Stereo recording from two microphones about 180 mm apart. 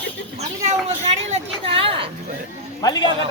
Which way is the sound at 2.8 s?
25° left (ahead or behind).